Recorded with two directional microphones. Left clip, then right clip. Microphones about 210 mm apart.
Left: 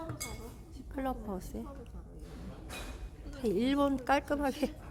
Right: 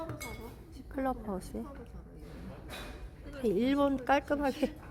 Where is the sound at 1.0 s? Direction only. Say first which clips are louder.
Right 2 dB; centre (ahead or behind).